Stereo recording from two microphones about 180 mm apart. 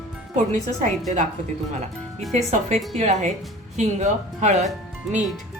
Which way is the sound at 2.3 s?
40° right (ahead or behind).